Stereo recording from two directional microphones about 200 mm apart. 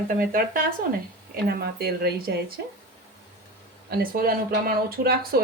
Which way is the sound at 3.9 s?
45° right (ahead or behind).